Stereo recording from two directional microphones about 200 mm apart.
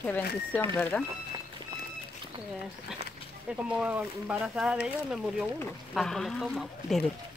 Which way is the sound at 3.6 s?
5° right (ahead or behind).